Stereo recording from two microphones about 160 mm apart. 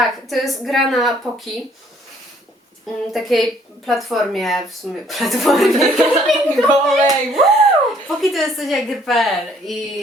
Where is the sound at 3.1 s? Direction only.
Centre (ahead or behind).